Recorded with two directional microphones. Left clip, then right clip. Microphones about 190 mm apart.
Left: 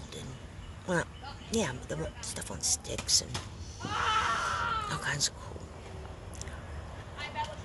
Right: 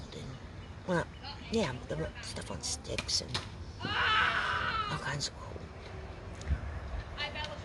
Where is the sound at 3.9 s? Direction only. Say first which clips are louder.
Right 1 dB; 35° left (ahead or behind).